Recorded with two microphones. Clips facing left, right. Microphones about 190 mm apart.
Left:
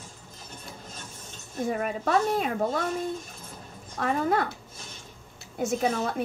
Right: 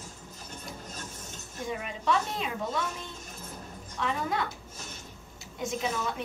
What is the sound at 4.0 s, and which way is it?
Speech, 50° left (ahead or behind).